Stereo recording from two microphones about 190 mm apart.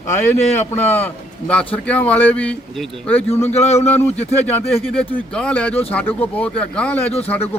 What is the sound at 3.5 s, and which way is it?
Speech, 35° left (ahead or behind).